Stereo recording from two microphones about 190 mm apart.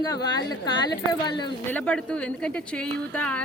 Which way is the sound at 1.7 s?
5° left (ahead or behind).